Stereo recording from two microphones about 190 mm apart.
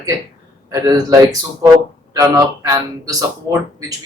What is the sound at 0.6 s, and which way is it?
A man's voice, 20° right (ahead or behind).